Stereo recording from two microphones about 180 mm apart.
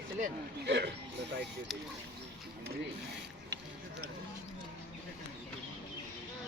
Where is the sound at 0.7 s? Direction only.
70° right (ahead or behind).